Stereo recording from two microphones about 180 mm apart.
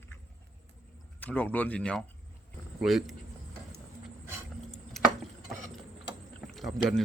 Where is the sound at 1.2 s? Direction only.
10° left (ahead or behind).